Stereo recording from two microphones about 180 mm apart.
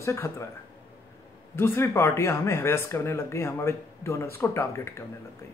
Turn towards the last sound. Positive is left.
turn(degrees=15)  # may be behind; listen again after turning